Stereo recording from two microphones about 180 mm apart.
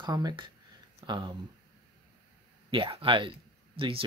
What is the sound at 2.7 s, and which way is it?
Speech, 30° right (ahead or behind).